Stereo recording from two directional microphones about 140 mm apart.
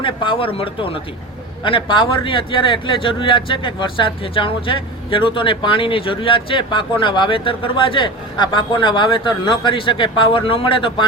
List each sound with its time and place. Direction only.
0.0 s speech: 35° left (ahead or behind)